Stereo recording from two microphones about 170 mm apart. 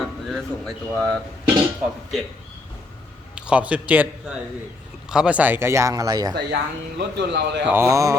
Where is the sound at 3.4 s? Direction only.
5° right (ahead or behind).